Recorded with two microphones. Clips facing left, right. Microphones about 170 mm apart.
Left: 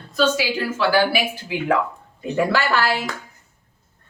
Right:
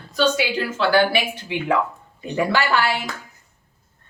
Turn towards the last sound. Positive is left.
turn(degrees=0)  # may be behind; listen again after turning